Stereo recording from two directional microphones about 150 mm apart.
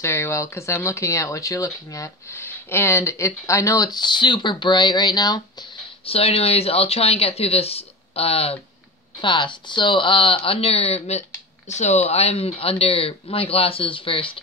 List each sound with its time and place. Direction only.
0.0 s speech: 20° left (ahead or behind)
6.0 s speech: 40° left (ahead or behind)